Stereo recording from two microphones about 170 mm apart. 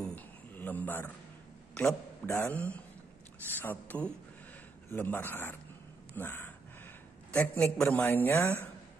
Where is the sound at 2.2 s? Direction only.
15° left (ahead or behind).